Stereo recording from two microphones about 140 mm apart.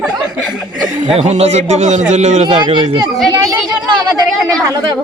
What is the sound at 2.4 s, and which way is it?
A child's voice, 35° right (ahead or behind).